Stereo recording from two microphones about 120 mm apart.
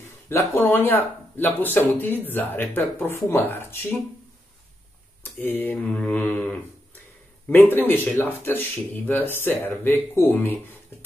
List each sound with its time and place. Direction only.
0.3 s speech: 20° left (ahead or behind)
5.2 s speech: 15° left (ahead or behind)